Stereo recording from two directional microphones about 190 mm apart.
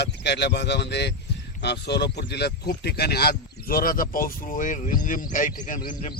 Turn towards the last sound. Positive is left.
turn(degrees=45)  # may be behind; listen again after turning